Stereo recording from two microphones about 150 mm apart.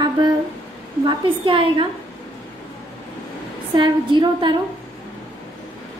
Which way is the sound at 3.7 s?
30° right (ahead or behind).